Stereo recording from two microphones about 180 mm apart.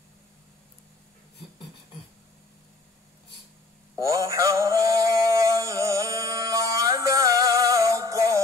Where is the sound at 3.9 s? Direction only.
20° right (ahead or behind).